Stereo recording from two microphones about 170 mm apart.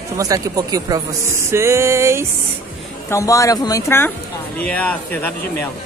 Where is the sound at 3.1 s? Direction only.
20° left (ahead or behind).